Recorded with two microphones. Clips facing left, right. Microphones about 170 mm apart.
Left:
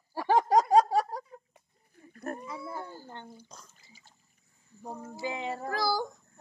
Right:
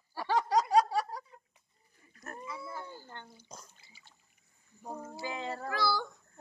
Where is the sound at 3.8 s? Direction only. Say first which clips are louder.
Left 3 dB; 40° left (ahead or behind).